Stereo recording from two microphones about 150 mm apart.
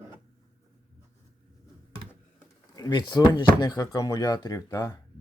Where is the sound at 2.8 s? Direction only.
30° left (ahead or behind).